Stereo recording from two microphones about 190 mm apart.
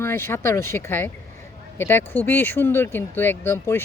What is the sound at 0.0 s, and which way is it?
A woman's voice, 15° left (ahead or behind).